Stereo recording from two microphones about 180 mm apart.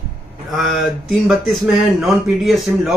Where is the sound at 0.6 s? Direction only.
Centre (ahead or behind).